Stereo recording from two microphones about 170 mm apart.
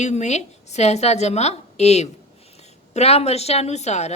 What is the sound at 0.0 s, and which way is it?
A woman's voice, 40° left (ahead or behind).